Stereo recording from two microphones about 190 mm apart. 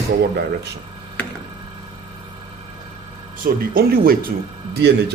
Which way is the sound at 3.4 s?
50° right (ahead or behind).